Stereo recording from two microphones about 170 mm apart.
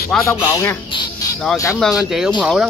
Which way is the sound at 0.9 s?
25° left (ahead or behind).